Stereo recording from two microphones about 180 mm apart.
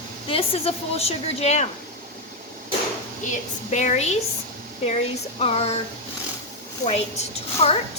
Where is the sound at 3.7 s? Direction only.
40° left (ahead or behind).